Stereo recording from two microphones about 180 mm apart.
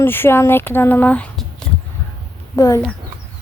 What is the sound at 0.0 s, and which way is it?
Speech, 10° left (ahead or behind).